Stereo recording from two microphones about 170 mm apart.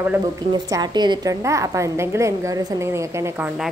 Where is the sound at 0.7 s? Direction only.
25° right (ahead or behind).